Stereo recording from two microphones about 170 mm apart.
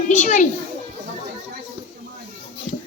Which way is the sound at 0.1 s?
50° left (ahead or behind).